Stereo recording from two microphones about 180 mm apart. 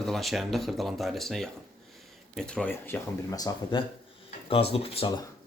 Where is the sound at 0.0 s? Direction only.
Centre (ahead or behind); by 5.2 s 30° left (ahead or behind).